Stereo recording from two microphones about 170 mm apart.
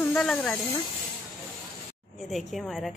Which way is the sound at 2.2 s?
Centre (ahead or behind).